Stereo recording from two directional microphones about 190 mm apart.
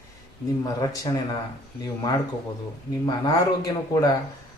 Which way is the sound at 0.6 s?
20° left (ahead or behind).